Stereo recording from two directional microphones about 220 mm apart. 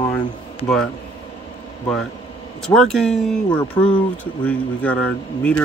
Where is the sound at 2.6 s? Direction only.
Centre (ahead or behind).